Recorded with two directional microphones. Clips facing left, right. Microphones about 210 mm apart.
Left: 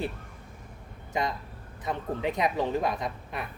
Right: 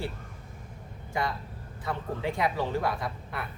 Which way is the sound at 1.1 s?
20° left (ahead or behind).